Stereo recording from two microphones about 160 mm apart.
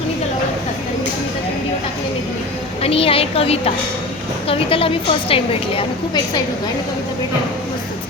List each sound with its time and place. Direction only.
2.8 s a woman's voice: 35° left (ahead or behind)